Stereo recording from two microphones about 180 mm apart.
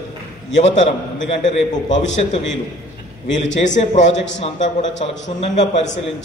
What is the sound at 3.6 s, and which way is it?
A man's voice, 40° left (ahead or behind).